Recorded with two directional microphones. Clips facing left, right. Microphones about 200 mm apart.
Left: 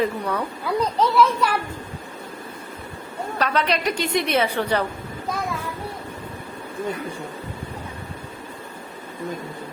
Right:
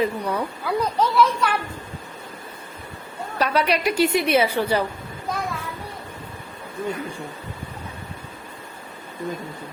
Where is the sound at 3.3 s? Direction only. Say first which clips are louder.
Right 2 dB; 10° right (ahead or behind).